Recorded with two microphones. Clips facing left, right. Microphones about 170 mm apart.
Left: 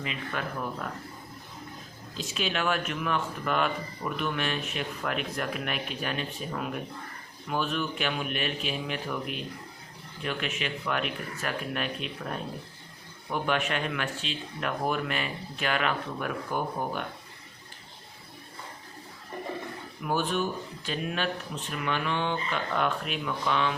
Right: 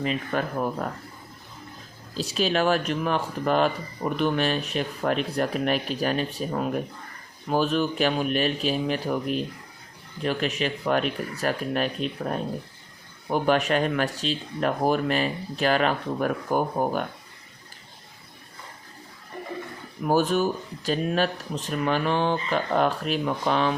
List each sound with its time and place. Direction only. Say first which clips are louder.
0.0 s speech: right 7 dB; 40° right (ahead or behind)
2.1 s speech: right 7 dB; 35° right (ahead or behind)
20.0 s speech: right 7 dB; 40° right (ahead or behind)